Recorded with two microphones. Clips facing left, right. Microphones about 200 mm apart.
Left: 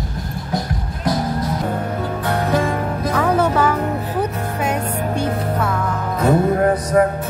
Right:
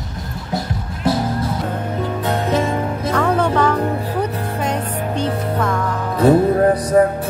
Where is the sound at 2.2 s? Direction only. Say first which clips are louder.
Even; 20° right (ahead or behind).